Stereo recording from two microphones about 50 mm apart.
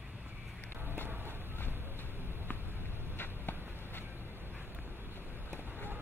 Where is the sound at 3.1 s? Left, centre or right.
Left.